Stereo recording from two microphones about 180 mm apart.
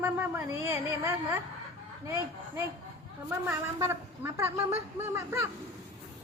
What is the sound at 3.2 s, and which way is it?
A woman's voice, 15° right (ahead or behind).